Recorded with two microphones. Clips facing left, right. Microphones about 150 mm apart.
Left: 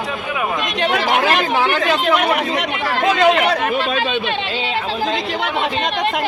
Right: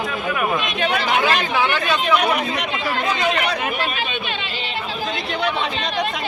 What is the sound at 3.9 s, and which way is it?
Speech, 90° left.